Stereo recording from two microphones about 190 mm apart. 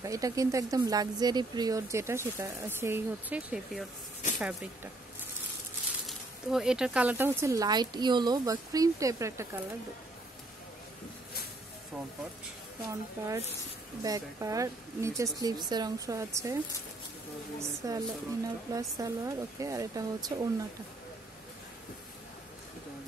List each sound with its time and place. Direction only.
0.0 s speech: 15° right (ahead or behind)
6.0 s speech: 5° right (ahead or behind)
14.0 s speech: 20° right (ahead or behind)
17.6 s speech: 20° right (ahead or behind)